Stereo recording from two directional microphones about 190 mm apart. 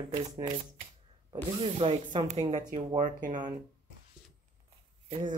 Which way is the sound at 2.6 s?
25° right (ahead or behind).